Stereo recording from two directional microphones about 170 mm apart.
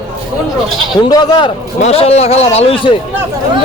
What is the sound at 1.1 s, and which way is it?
Speech, 25° left (ahead or behind).